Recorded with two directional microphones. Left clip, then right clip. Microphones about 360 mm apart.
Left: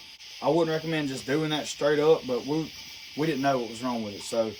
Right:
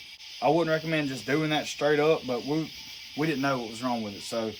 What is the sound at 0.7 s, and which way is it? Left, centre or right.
Speech, right.